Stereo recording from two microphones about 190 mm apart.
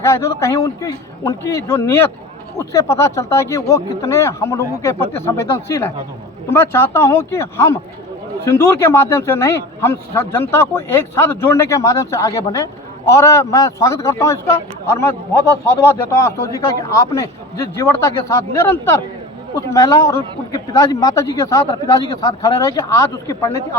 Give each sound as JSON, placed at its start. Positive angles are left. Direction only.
{"t": 0.0, "sound": "speech", "side_deg": 15}